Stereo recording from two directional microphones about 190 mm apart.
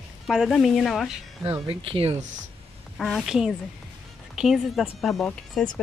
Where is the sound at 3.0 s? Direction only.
Centre (ahead or behind).